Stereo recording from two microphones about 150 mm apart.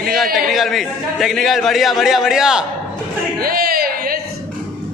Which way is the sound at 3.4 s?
80° right.